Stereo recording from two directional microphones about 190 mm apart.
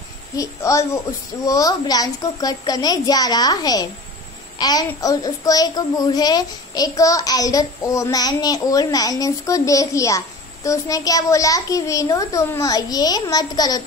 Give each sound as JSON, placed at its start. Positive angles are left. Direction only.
{"t": 0.4, "sound": "a child's voice", "side_deg": 15}